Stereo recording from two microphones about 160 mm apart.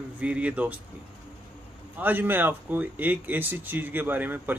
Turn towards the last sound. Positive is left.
turn(degrees=-10)  # may be behind; listen again after turning